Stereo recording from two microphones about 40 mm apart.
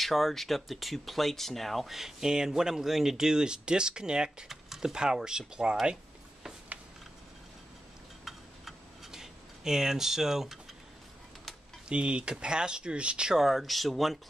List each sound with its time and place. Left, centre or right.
0.0 s speech: centre
1.9 s speech: centre
4.5 s a sound: centre
4.9 s speech: centre
8.3 s tick-tock: centre
11.9 s speech: right
13.3 s speech: centre